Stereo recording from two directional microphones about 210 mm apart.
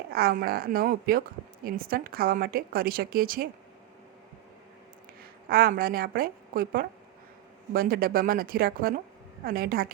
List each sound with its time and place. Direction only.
0.1 s a woman's voice: 45° right (ahead or behind)
5.5 s a woman's voice: 45° right (ahead or behind)